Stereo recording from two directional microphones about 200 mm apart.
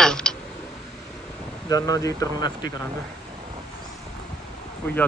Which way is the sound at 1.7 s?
15° left (ahead or behind).